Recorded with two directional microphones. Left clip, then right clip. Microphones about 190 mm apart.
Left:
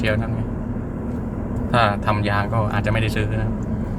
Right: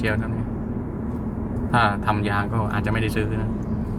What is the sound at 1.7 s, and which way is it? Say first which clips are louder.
Speech: left 2 dB; 5° left (ahead or behind).